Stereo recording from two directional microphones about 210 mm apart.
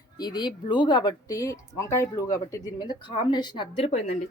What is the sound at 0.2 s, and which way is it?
Speech, 20° left (ahead or behind).